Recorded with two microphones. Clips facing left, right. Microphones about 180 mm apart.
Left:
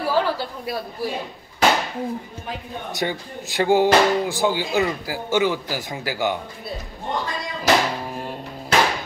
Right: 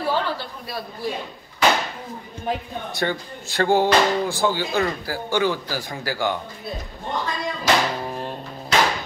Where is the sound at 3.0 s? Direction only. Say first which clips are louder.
Right 1 dB; 15° left (ahead or behind).